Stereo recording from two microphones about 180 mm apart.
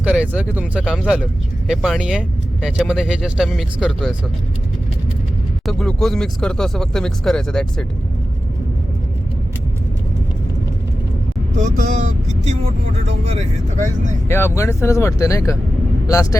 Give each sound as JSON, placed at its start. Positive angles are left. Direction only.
{"t": 0.0, "sound": "speech", "side_deg": -5}
{"t": 5.6, "sound": "speech", "side_deg": 0}
{"t": 11.5, "sound": "speech", "side_deg": -45}
{"t": 14.3, "sound": "speech", "side_deg": 15}